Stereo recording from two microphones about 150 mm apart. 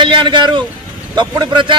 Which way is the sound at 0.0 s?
30° right (ahead or behind).